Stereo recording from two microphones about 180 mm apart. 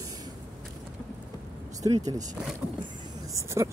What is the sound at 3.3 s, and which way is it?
Speech, 15° right (ahead or behind).